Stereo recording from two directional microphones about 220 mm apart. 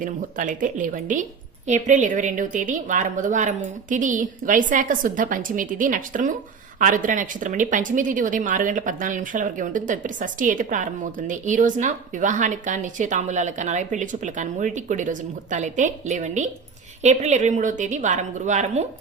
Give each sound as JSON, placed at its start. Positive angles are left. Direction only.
{"t": 0.0, "sound": "a woman's voice", "side_deg": -35}